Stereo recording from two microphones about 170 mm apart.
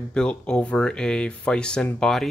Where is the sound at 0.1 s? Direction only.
5° left (ahead or behind).